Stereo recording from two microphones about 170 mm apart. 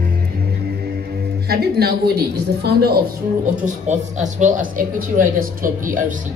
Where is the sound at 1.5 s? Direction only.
65° right (ahead or behind).